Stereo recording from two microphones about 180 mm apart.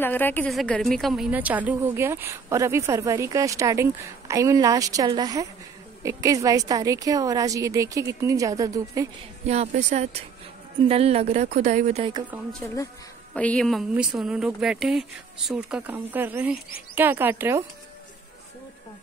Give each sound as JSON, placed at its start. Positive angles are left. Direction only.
{"t": 0.0, "sound": "a woman's voice", "side_deg": 10}
{"t": 9.5, "sound": "speech", "side_deg": -35}
{"t": 12.6, "sound": "speech", "side_deg": 10}